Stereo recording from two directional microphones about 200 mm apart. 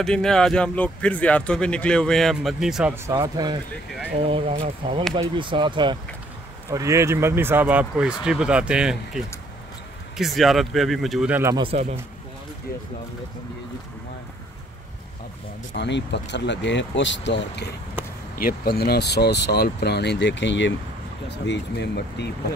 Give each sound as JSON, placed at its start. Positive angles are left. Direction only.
{"t": 0.0, "sound": "speech", "side_deg": 5}
{"t": 3.1, "sound": "speech", "side_deg": -20}
{"t": 11.5, "sound": "speech", "side_deg": -30}
{"t": 15.7, "sound": "speech", "side_deg": 60}
{"t": 18.4, "sound": "speech", "side_deg": 50}